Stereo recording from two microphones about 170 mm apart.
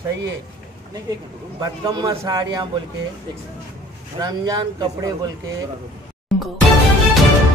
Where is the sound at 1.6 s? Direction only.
25° right (ahead or behind).